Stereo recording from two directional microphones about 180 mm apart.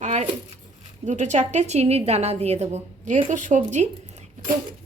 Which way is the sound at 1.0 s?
40° right (ahead or behind).